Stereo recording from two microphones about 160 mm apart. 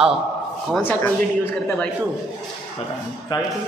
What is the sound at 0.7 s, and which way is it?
A man's voice, 10° left (ahead or behind).